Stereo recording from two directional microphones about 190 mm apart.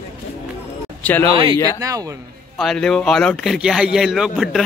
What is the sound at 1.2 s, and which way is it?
Speech, 30° right (ahead or behind).